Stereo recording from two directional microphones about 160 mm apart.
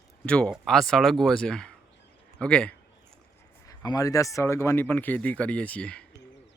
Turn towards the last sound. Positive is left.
turn(degrees=10)  # may be behind; listen again after turning